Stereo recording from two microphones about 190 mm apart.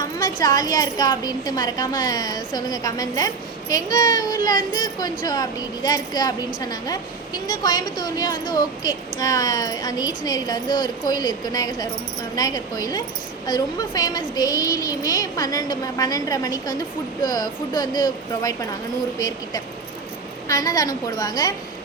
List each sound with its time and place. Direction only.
0.0 s a woman's voice: 20° left (ahead or behind)
20.5 s a woman's voice: 20° left (ahead or behind)